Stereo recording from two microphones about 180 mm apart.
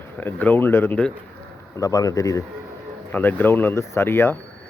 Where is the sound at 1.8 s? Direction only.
20° left (ahead or behind).